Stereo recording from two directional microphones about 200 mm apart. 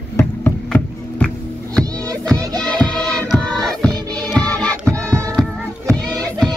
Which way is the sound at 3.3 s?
5° left (ahead or behind).